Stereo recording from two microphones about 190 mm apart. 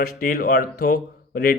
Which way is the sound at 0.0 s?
50° left (ahead or behind).